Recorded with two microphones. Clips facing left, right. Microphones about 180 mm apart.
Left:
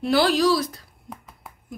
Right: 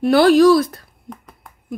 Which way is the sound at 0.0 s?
55° right (ahead or behind).